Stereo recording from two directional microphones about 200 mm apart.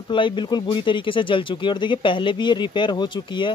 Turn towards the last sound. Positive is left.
turn(degrees=25)  # may be behind; listen again after turning